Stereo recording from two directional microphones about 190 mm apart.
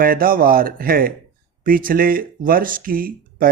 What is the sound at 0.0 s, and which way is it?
Speech, 50° right (ahead or behind).